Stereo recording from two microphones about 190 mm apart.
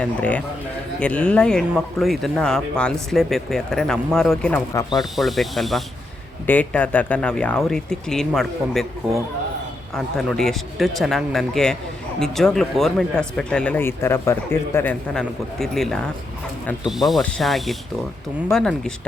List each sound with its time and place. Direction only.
0.0 s a man's voice: 5° left (ahead or behind)
4.7 s a man's voice: 15° left (ahead or behind)
4.9 s speech: centre (ahead or behind)